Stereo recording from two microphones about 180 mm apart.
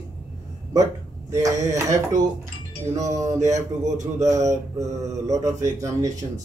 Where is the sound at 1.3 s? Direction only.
20° right (ahead or behind).